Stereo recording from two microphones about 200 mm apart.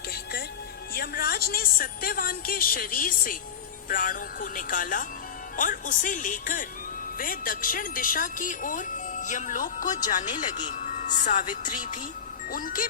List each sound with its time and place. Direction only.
0.9 s a woman's voice: 50° left (ahead or behind)